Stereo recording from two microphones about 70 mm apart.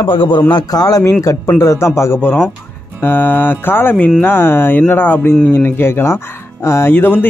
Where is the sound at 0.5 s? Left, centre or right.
Left.